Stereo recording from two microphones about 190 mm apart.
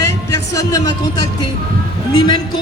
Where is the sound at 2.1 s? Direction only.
25° left (ahead or behind).